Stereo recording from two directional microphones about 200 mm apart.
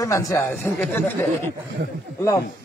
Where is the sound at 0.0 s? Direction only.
15° left (ahead or behind).